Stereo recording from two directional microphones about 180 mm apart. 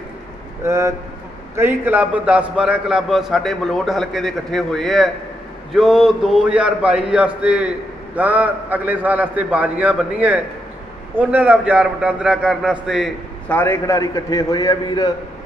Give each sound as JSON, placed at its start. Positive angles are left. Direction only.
{"t": 0.7, "sound": "a man's voice", "side_deg": -15}
{"t": 13.5, "sound": "a man's voice", "side_deg": 10}